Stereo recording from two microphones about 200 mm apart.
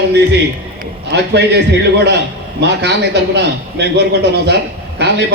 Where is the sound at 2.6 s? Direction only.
60° right (ahead or behind).